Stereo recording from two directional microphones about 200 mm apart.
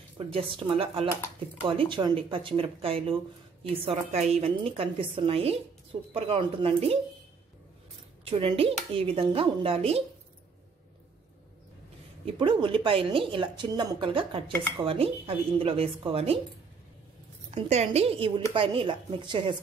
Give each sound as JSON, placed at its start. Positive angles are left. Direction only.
{"t": 0.3, "sound": "speech", "side_deg": -30}
{"t": 8.3, "sound": "speech", "side_deg": -30}
{"t": 12.4, "sound": "speech", "side_deg": -25}
{"t": 17.6, "sound": "speech", "side_deg": -30}